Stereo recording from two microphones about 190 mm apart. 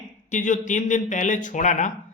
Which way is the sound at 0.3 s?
40° left (ahead or behind).